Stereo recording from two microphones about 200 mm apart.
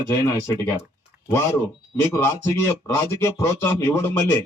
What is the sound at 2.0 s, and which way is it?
Speech, 10° left (ahead or behind).